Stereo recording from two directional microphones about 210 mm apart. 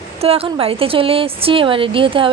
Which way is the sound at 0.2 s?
30° right (ahead or behind).